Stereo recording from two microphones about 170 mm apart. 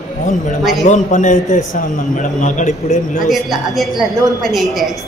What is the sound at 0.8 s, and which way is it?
A man's voice, 45° left (ahead or behind).